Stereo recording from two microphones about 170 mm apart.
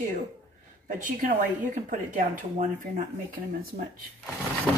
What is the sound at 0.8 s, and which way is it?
Speech, 50° right (ahead or behind).